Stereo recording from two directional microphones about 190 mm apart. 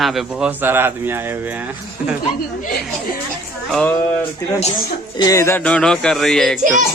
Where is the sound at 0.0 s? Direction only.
Centre (ahead or behind).